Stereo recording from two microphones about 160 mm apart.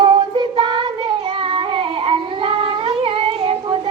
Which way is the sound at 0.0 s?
30° right (ahead or behind).